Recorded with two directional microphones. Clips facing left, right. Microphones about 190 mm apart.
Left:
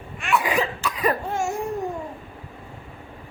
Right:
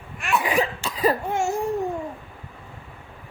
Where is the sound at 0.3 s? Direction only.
30° right (ahead or behind).